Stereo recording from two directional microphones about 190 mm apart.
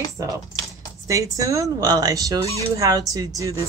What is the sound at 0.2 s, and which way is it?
Speech, 15° right (ahead or behind).